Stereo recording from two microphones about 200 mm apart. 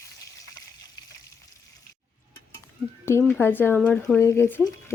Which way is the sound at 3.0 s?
10° left (ahead or behind).